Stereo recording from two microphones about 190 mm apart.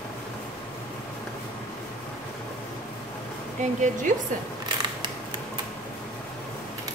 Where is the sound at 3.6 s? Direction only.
40° right (ahead or behind).